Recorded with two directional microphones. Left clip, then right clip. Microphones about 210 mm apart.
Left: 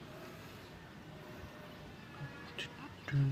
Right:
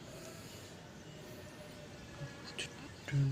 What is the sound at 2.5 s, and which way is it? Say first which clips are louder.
Music: even; centre (ahead or behind).